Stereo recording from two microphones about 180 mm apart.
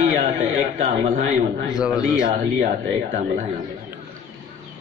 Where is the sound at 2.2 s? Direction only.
50° right (ahead or behind).